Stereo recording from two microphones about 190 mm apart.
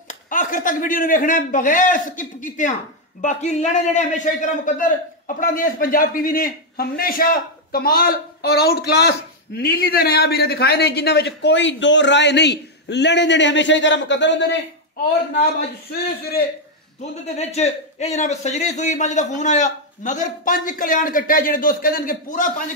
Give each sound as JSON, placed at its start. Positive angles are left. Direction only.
{"t": 0.1, "sound": "a man's voice", "side_deg": 45}
{"t": 17.4, "sound": "a man's voice", "side_deg": 35}